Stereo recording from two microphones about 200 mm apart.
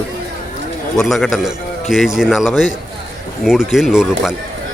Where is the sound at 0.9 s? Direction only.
Centre (ahead or behind).